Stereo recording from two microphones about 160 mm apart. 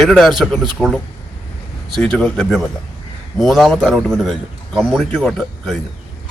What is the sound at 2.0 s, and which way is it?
A man's voice, 5° left (ahead or behind).